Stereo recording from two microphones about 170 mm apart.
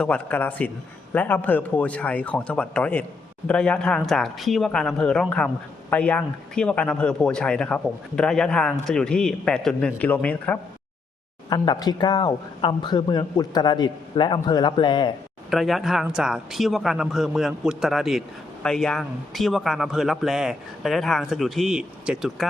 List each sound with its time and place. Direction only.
0.0 s a man's voice: 10° left (ahead or behind)
11.4 s speech: 25° left (ahead or behind)
15.4 s a man's voice: centre (ahead or behind)